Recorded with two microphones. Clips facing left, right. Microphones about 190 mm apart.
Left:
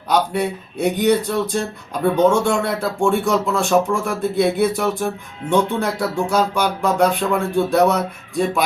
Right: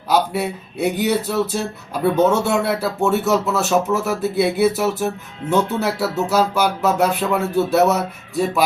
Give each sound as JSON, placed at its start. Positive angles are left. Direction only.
{"t": 0.1, "sound": "speech", "side_deg": -5}